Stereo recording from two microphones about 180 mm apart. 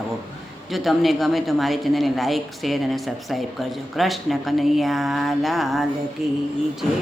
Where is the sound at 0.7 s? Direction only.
Centre (ahead or behind).